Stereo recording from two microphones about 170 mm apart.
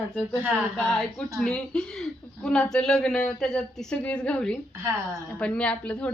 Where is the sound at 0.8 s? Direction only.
5° left (ahead or behind).